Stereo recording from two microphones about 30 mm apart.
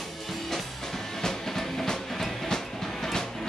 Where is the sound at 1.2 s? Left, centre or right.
Centre.